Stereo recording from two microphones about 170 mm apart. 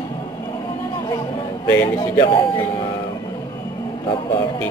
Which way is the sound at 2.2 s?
30° left (ahead or behind).